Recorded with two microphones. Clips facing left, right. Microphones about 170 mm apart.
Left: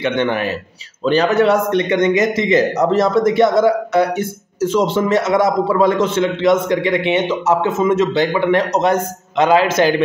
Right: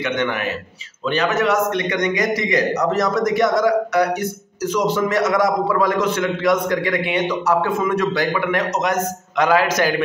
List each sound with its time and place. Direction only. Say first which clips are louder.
0.0 s a man's voice: left 4 dB; 30° left (ahead or behind)